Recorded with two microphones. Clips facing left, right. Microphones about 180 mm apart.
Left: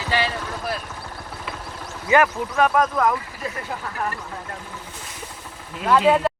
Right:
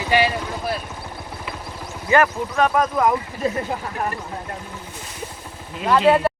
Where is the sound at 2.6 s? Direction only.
Centre (ahead or behind).